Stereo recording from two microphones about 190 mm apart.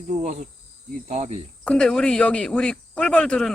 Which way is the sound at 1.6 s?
5° left (ahead or behind).